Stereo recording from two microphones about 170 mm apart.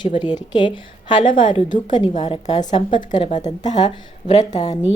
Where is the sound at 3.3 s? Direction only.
45° left (ahead or behind).